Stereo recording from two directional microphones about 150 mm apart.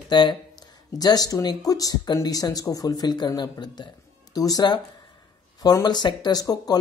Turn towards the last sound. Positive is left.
turn(degrees=25)  # may be behind; listen again after turning